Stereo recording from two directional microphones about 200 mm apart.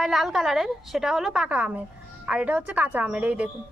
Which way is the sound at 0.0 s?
Centre (ahead or behind).